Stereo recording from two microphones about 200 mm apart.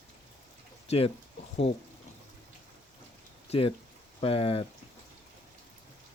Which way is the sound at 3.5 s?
30° left (ahead or behind).